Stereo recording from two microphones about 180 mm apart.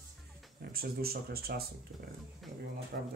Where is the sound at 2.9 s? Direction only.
60° right (ahead or behind).